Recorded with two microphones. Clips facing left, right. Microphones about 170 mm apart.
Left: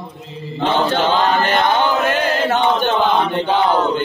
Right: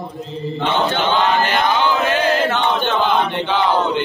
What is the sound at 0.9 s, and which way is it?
Chant, 45° left (ahead or behind).